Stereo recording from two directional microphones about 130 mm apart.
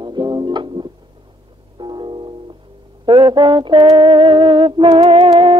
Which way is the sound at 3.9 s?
40° right (ahead or behind).